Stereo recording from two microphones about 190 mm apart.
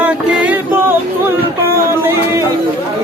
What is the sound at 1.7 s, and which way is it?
Music, 15° right (ahead or behind).